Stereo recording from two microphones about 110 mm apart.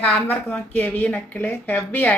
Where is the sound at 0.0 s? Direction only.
15° left (ahead or behind).